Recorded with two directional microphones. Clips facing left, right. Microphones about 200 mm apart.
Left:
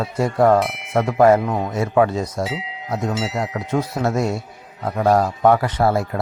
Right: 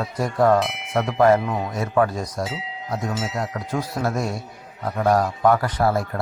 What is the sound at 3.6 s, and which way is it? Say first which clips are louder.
Speech: left 5 dB; 25° left (ahead or behind).